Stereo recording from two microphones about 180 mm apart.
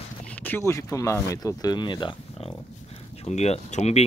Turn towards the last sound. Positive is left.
turn(degrees=35)  # may be behind; listen again after turning